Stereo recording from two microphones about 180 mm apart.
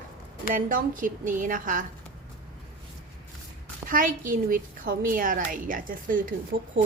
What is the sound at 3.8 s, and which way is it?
A woman's voice, 50° right (ahead or behind).